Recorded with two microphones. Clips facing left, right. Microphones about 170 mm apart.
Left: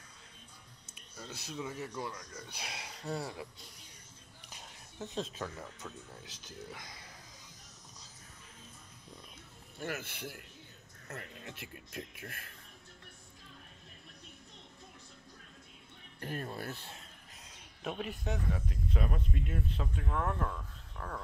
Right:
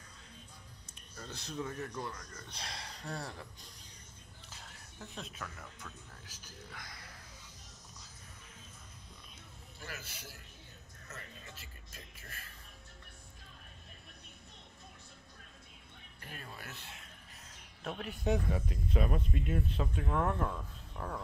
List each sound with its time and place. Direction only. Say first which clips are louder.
1.1 s speech: right 1 dB; 5° left (ahead or behind)
4.5 s speech: left 2 dB; 20° left (ahead or behind)
9.8 s speech: left 9 dB; 55° left (ahead or behind)
16.2 s speech: left 10 dB; 45° left (ahead or behind)
17.8 s speech: right 3 dB; 5° left (ahead or behind)